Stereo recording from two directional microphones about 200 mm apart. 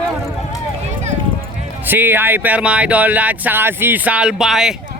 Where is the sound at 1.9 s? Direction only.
10° right (ahead or behind).